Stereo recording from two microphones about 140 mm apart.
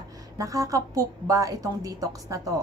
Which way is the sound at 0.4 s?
25° right (ahead or behind).